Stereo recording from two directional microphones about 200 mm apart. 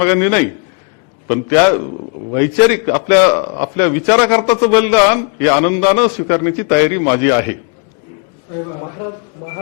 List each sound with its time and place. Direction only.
0.0 s a man's voice: 10° left (ahead or behind)